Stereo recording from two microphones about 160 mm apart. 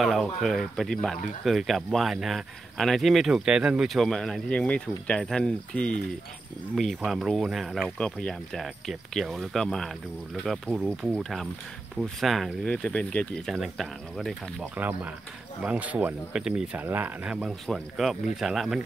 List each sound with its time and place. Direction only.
0.0 s speech: centre (ahead or behind)
14.8 s speech: 10° right (ahead or behind)